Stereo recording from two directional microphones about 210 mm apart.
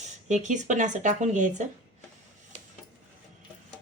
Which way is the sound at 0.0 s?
35° right (ahead or behind).